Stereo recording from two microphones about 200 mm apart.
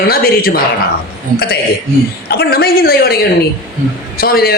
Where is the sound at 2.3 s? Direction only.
50° left (ahead or behind).